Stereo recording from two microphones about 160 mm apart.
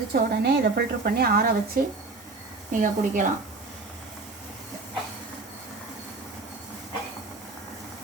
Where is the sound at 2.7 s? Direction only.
55° right (ahead or behind).